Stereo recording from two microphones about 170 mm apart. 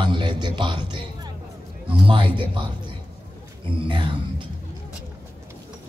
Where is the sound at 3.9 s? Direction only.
30° right (ahead or behind).